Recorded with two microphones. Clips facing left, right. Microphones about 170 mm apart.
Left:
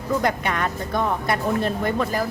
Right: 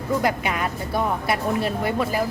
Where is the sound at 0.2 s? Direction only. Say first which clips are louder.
Even; 5° right (ahead or behind).